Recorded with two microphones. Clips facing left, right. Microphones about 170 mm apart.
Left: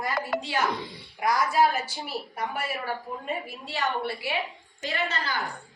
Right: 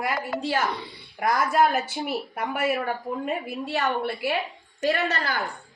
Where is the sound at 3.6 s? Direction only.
55° right (ahead or behind).